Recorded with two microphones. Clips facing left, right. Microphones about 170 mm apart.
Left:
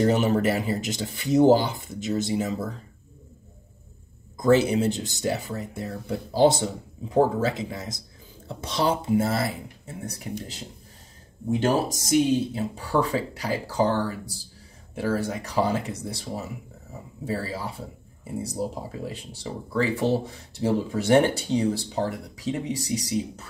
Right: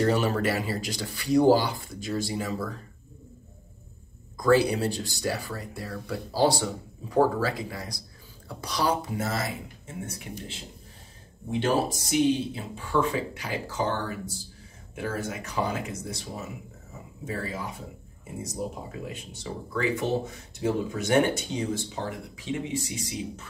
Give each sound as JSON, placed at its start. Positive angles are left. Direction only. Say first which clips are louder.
{"t": 0.0, "sound": "speech", "louder": "left 3 dB", "side_deg": 20}
{"t": 4.4, "sound": "speech", "louder": "left 2 dB", "side_deg": 20}
{"t": 11.6, "sound": "speech", "louder": "left 1 dB", "side_deg": 40}